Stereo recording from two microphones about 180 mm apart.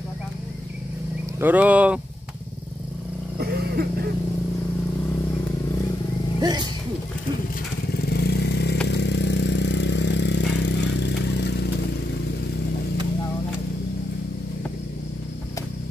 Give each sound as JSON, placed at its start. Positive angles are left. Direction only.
{"t": 1.4, "sound": "speech", "side_deg": -10}
{"t": 6.4, "sound": "speech", "side_deg": -25}
{"t": 7.9, "sound": "vehicle", "side_deg": 60}